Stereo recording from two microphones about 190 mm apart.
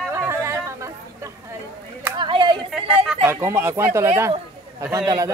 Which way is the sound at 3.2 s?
15° right (ahead or behind).